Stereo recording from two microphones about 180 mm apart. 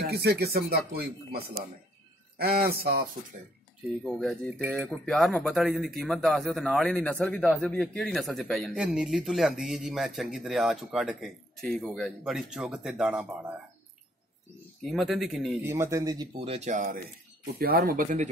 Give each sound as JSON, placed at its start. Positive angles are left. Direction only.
{"t": 0.0, "sound": "speech", "side_deg": -60}
{"t": 4.0, "sound": "speech", "side_deg": 5}
{"t": 14.9, "sound": "speech", "side_deg": 0}
{"t": 15.6, "sound": "speech", "side_deg": -15}
{"t": 16.4, "sound": "speech", "side_deg": -40}